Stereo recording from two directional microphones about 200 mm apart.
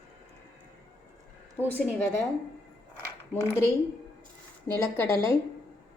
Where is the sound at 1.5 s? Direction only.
10° left (ahead or behind).